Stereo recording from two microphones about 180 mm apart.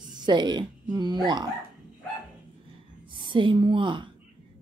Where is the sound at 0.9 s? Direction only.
25° right (ahead or behind).